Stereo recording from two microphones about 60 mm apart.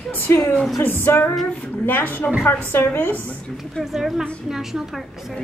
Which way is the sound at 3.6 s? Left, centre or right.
Centre.